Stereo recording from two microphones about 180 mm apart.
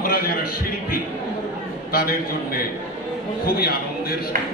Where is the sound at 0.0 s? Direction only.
55° left (ahead or behind).